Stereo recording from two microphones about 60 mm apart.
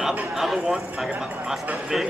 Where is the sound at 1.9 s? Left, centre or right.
Centre.